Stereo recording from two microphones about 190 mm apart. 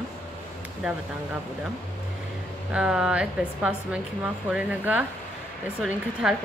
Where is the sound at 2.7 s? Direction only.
5° right (ahead or behind).